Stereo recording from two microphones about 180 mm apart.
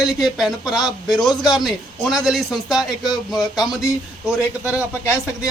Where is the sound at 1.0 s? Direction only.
20° left (ahead or behind).